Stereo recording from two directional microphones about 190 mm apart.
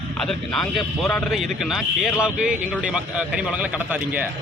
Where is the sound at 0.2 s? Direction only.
Centre (ahead or behind).